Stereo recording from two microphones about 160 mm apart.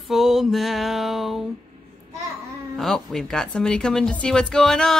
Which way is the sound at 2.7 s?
Centre (ahead or behind).